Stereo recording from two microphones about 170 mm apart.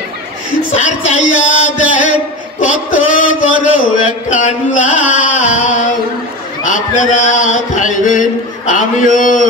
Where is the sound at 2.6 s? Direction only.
50° left (ahead or behind).